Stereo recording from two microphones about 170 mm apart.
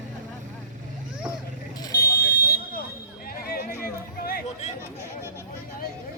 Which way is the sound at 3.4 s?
65° left (ahead or behind).